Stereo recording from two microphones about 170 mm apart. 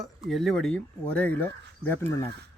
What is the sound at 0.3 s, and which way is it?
Speech, centre (ahead or behind).